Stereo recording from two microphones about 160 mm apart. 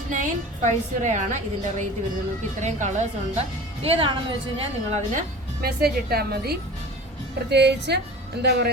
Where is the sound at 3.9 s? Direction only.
35° right (ahead or behind).